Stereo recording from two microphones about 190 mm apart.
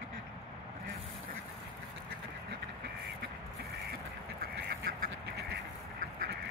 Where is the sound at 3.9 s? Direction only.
55° right (ahead or behind).